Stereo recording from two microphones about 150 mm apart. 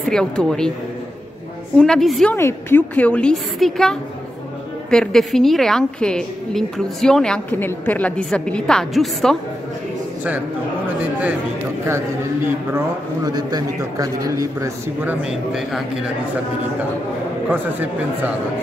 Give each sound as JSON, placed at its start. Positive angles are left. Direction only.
{"t": 0.1, "sound": "a woman's voice", "side_deg": 5}
{"t": 1.8, "sound": "a woman's voice", "side_deg": 5}
{"t": 2.3, "sound": "a woman's voice", "side_deg": 15}
{"t": 12.7, "sound": "a man's voice", "side_deg": -25}
{"t": 15.2, "sound": "a woman's voice", "side_deg": 0}
{"t": 17.5, "sound": "speech", "side_deg": -10}